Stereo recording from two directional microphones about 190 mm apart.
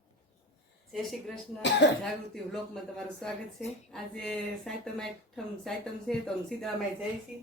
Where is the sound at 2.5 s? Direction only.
5° left (ahead or behind).